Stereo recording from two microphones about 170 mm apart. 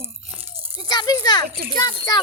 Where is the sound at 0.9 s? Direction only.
25° left (ahead or behind).